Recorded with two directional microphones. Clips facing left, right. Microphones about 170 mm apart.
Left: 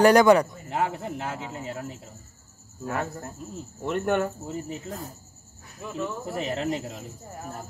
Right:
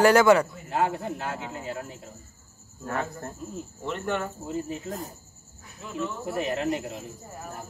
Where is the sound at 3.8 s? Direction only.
50° left (ahead or behind).